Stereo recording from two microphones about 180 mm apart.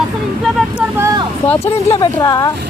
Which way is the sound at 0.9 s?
20° right (ahead or behind).